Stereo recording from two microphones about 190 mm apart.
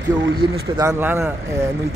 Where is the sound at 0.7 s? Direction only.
15° right (ahead or behind).